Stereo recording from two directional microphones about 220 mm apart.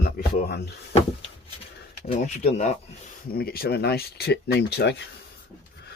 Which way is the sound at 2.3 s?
30° left (ahead or behind).